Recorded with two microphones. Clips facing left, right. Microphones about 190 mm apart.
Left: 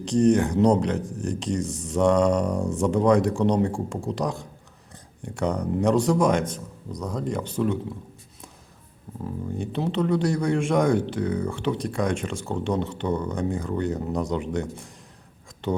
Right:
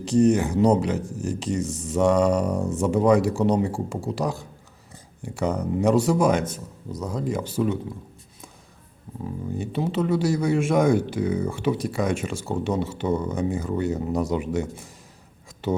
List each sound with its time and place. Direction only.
0.0 s speech: 5° right (ahead or behind)
9.2 s speech: 5° right (ahead or behind)